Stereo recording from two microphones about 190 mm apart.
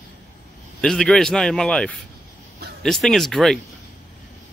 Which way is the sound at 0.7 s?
5° left (ahead or behind).